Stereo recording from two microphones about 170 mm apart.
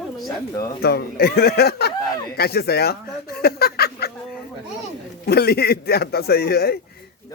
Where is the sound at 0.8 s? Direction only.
65° left (ahead or behind).